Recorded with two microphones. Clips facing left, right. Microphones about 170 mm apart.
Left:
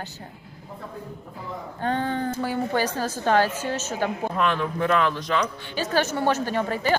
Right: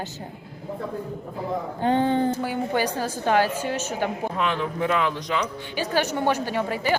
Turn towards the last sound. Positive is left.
turn(degrees=-15)  # may be behind; listen again after turning